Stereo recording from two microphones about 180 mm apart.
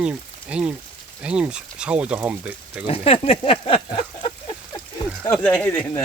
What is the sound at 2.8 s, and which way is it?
Speech, 35° left (ahead or behind).